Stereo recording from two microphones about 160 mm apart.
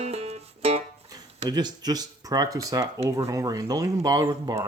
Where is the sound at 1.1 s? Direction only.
25° right (ahead or behind).